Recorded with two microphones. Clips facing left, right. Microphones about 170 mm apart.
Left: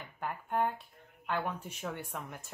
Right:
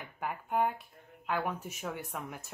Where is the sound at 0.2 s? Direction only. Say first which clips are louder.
Right 1 dB; 10° right (ahead or behind).